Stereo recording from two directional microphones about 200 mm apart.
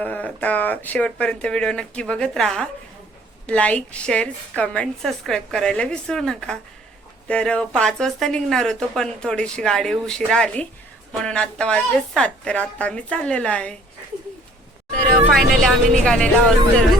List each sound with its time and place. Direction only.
0.0 s speech: 5° left (ahead or behind)
15.3 s speech: centre (ahead or behind)